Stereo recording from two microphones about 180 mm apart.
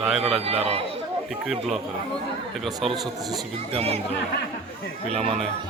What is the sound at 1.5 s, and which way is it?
A man's voice, centre (ahead or behind).